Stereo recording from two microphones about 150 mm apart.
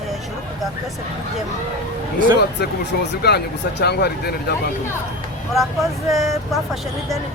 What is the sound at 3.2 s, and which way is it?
Speech, 90° left.